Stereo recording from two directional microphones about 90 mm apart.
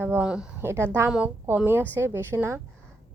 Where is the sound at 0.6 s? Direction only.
25° right (ahead or behind).